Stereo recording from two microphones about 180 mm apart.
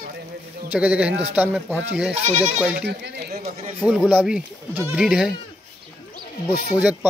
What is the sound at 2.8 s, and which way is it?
Speech, 65° right (ahead or behind).